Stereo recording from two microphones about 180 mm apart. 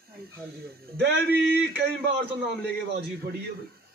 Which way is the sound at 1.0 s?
70° right (ahead or behind).